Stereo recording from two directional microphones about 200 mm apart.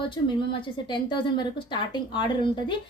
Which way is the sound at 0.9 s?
25° left (ahead or behind).